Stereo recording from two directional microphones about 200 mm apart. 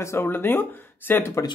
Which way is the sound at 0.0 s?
10° left (ahead or behind).